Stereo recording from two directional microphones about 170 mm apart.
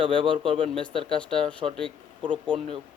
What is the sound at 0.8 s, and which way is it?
Speech, 5° left (ahead or behind).